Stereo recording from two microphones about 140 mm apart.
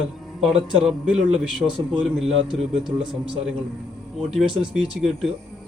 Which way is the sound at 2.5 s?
35° right (ahead or behind).